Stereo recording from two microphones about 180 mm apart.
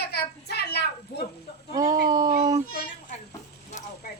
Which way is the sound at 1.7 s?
20° right (ahead or behind).